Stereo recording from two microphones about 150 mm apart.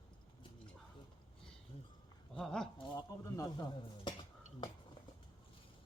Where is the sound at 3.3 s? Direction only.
25° left (ahead or behind).